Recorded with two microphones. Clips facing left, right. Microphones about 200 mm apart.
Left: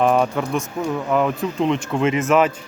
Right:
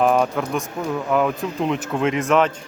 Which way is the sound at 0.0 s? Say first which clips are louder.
Left 1 dB; centre (ahead or behind).